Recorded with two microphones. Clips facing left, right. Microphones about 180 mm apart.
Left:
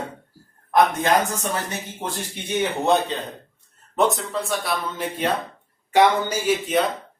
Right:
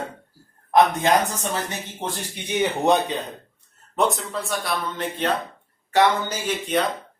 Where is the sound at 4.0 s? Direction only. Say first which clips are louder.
Left 2 dB; centre (ahead or behind).